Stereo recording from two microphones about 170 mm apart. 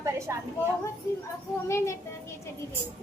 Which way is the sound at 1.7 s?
15° left (ahead or behind).